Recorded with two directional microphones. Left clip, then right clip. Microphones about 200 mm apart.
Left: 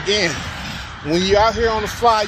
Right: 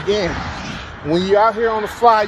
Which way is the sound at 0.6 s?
65° left (ahead or behind).